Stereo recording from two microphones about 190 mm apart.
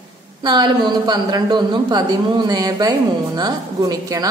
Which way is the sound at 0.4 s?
25° right (ahead or behind).